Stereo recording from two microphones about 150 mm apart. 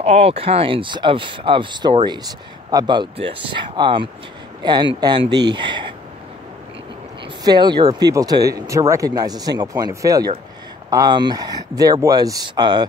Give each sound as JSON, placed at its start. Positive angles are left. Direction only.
{"t": 0.0, "sound": "speech", "side_deg": -45}
{"t": 7.4, "sound": "speech", "side_deg": -30}